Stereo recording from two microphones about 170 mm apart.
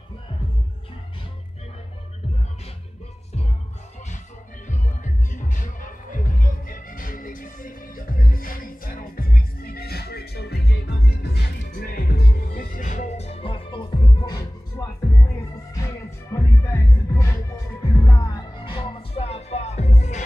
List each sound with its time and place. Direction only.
4.6 s music: 45° left (ahead or behind)